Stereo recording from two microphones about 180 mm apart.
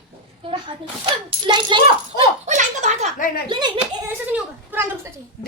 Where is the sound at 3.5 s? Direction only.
25° right (ahead or behind).